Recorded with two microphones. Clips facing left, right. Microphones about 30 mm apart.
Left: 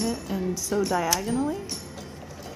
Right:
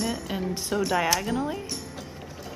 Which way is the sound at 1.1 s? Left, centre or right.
Right.